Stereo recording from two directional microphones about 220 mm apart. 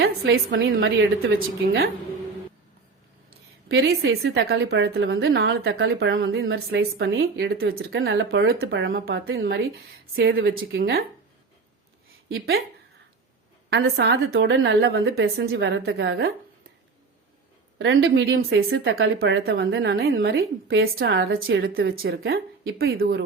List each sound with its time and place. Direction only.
0.0 s a woman's voice: 50° right (ahead or behind)
3.7 s a woman's voice: 55° right (ahead or behind)
10.2 s a woman's voice: 45° right (ahead or behind)
12.3 s a woman's voice: 45° right (ahead or behind)
13.7 s a woman's voice: 50° right (ahead or behind)
17.7 s a woman's voice: 60° right (ahead or behind)
19.2 s a woman's voice: 45° right (ahead or behind)